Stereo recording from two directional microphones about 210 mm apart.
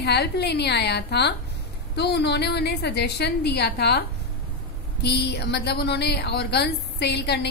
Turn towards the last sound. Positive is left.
turn(degrees=50)  # may be behind; listen again after turning